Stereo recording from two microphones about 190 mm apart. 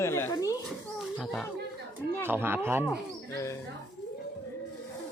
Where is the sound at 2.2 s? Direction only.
10° right (ahead or behind).